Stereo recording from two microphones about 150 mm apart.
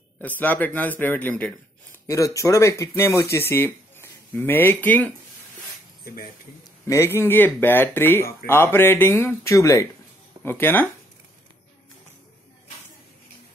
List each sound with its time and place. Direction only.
0.4 s speech: 10° left (ahead or behind)
6.9 s speech: 15° left (ahead or behind)